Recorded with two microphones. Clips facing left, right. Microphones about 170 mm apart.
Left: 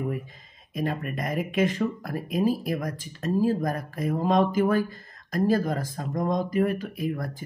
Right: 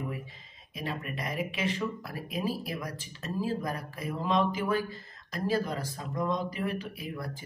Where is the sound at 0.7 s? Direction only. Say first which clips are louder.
Left 7 dB; 50° left (ahead or behind).